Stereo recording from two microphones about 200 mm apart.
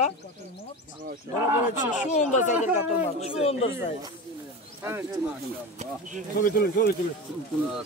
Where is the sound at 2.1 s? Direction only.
35° left (ahead or behind).